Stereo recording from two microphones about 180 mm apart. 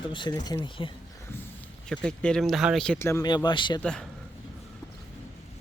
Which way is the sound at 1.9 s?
5° left (ahead or behind).